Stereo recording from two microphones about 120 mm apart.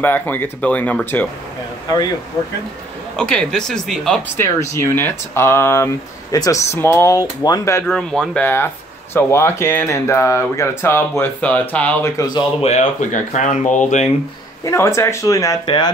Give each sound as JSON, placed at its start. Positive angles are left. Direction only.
{"t": 0.0, "sound": "speech", "side_deg": 15}
{"t": 3.2, "sound": "speech", "side_deg": 5}
{"t": 4.4, "sound": "speech", "side_deg": 25}
{"t": 7.2, "sound": "speech", "side_deg": 30}
{"t": 7.8, "sound": "speech", "side_deg": 5}
{"t": 9.1, "sound": "speech", "side_deg": 20}
{"t": 12.2, "sound": "speech", "side_deg": 30}
{"t": 12.6, "sound": "speech", "side_deg": 80}
{"t": 14.6, "sound": "speech", "side_deg": 25}
{"t": 15.6, "sound": "speech", "side_deg": 40}